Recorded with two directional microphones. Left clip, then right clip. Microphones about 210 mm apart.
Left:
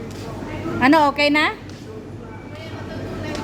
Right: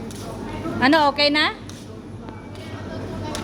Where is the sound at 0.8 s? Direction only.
15° left (ahead or behind).